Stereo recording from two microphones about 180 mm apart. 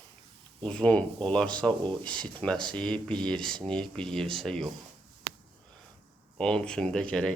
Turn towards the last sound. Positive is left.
turn(degrees=5)  # may be behind; listen again after turning